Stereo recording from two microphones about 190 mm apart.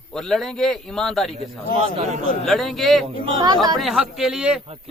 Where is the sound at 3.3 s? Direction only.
20° right (ahead or behind).